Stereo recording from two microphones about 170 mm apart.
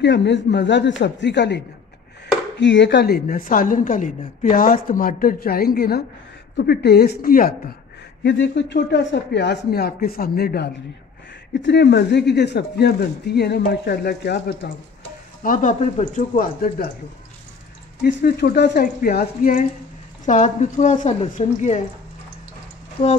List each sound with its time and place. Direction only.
0.0 s speech: 90° left
2.6 s a woman's voice: 90° left; by 7.7 s 55° left (ahead or behind)
8.2 s speech: 90° left; by 10.7 s 65° left (ahead or behind)
11.6 s speech: 85° left
15.4 s speech: 50° left (ahead or behind)
18.0 s speech: 80° left
18.9 s speech: 55° left (ahead or behind)